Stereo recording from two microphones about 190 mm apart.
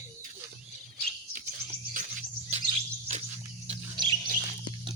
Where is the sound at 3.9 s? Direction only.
25° right (ahead or behind).